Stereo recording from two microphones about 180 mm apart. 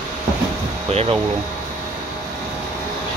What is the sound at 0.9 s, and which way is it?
Speech, 35° right (ahead or behind).